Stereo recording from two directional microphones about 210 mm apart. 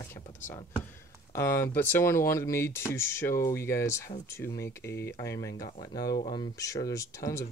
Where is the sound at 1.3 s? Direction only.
10° left (ahead or behind).